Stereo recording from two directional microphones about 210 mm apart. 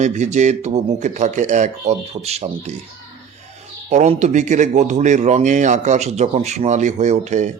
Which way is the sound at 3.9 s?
35° right (ahead or behind).